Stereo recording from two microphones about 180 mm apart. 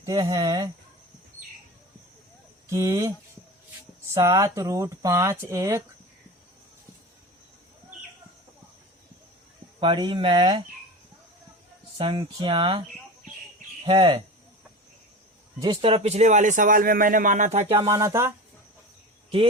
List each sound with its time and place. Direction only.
0.0 s speech: 20° right (ahead or behind)
2.6 s speech: 15° right (ahead or behind)
4.1 s speech: 15° right (ahead or behind)
9.8 s speech: 25° right (ahead or behind)
11.9 s speech: 25° right (ahead or behind)
13.8 s speech: 30° right (ahead or behind)
15.6 s speech: 30° right (ahead or behind)
17.7 s speech: 20° right (ahead or behind)